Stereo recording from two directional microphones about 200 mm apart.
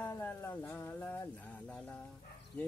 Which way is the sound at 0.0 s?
10° left (ahead or behind).